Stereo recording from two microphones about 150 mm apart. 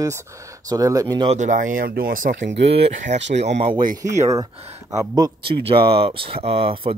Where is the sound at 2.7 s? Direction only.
40° right (ahead or behind).